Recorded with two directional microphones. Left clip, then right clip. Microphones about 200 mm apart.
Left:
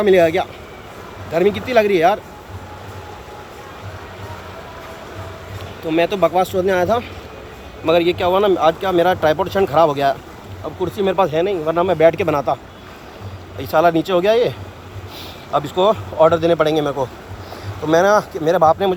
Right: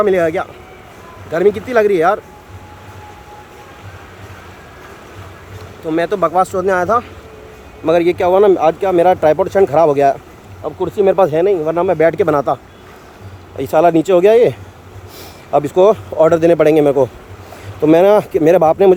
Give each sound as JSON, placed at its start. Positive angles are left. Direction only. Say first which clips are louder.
{"t": 0.0, "sound": "speech", "louder": "even", "side_deg": -20}
{"t": 5.9, "sound": "speech", "louder": "right 1 dB", "side_deg": -25}
{"t": 7.9, "sound": "speech", "louder": "right 3 dB", "side_deg": -35}
{"t": 13.6, "sound": "speech", "louder": "right 3 dB", "side_deg": -40}
{"t": 15.5, "sound": "a man's voice", "louder": "right 5 dB", "side_deg": -40}
{"t": 17.8, "sound": "a man's voice", "louder": "right 4 dB", "side_deg": -55}